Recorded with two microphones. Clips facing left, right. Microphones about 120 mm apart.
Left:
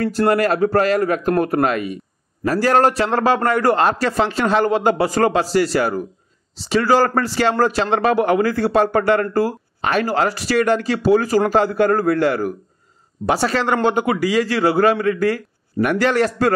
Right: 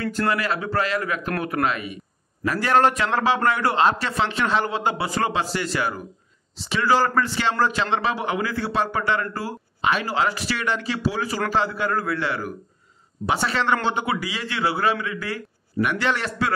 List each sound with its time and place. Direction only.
0.3 s a man's voice: 45° left (ahead or behind)